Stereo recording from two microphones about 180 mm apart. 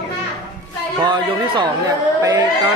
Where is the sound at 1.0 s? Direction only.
25° right (ahead or behind).